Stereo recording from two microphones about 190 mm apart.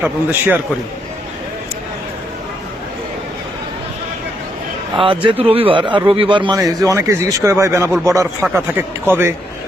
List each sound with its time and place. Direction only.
0.0 s a man's voice: 10° right (ahead or behind)
5.0 s a man's voice: 30° right (ahead or behind); by 9.3 s 10° right (ahead or behind)